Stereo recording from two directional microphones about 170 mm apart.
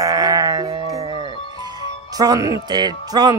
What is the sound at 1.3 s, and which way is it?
Music, 30° left (ahead or behind).